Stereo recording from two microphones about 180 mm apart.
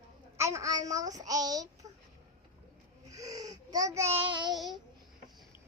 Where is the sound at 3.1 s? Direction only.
20° right (ahead or behind).